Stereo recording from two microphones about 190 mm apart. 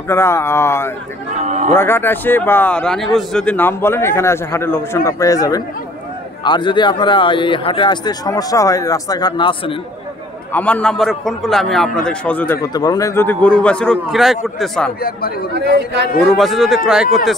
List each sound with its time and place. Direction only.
0.1 s a man's voice: 15° left (ahead or behind)
1.4 s a sound: 40° right (ahead or behind)
1.7 s a man's voice: 10° left (ahead or behind)
10.5 s a man's voice: 5° left (ahead or behind)
12.7 s a man's voice: 20° left (ahead or behind); by 14.9 s centre (ahead or behind)
15.5 s a man's voice: 60° right (ahead or behind)
16.2 s a man's voice: centre (ahead or behind)